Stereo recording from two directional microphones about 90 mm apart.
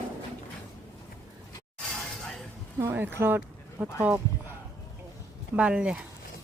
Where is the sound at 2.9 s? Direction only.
25° right (ahead or behind).